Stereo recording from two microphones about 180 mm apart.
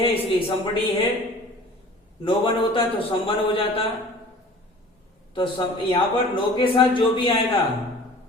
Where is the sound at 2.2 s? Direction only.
30° left (ahead or behind).